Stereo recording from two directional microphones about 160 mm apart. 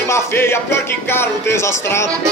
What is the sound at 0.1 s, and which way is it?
Music, 15° left (ahead or behind).